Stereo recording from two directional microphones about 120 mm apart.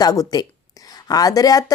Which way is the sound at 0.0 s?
30° left (ahead or behind).